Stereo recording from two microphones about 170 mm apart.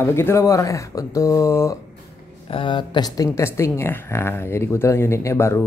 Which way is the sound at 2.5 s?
30° left (ahead or behind).